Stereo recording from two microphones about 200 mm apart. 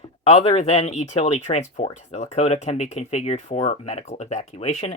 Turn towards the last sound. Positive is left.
turn(degrees=30)  # may be behind; listen again after turning